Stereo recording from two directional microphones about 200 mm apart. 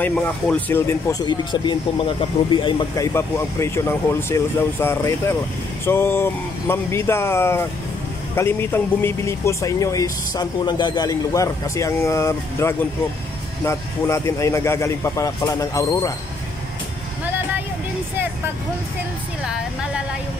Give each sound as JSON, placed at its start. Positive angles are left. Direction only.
{"t": 0.0, "sound": "speech", "side_deg": 5}
{"t": 3.1, "sound": "speech", "side_deg": 15}
{"t": 19.4, "sound": "a woman's voice", "side_deg": -5}